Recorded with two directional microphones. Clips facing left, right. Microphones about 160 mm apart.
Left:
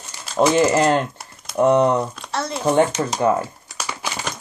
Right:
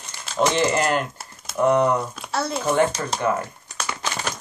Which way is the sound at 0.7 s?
25° left (ahead or behind).